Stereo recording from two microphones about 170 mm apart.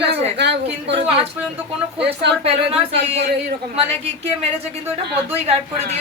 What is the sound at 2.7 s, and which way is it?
Speech, 35° right (ahead or behind).